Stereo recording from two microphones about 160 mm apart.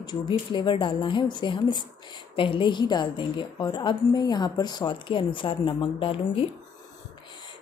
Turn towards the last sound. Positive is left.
turn(degrees=35)  # may be behind; listen again after turning